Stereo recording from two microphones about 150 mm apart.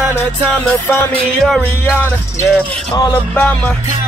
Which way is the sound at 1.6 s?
15° left (ahead or behind).